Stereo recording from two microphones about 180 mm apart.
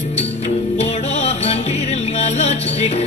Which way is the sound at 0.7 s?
35° left (ahead or behind).